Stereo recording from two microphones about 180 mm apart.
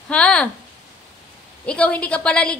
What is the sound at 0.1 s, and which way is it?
Speech, 5° left (ahead or behind).